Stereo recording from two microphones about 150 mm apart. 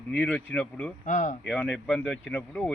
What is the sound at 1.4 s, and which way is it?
Speech, 5° left (ahead or behind).